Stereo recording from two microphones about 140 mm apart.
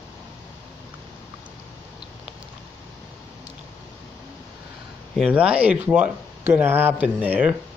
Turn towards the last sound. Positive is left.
turn(degrees=-10)  # may be behind; listen again after turning